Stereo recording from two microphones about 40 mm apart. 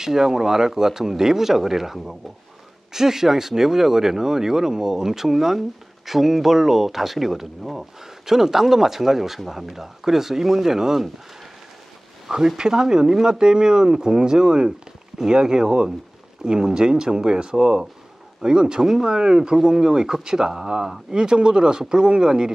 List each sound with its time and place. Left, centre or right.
0.0 s speech: centre
12.3 s speech: centre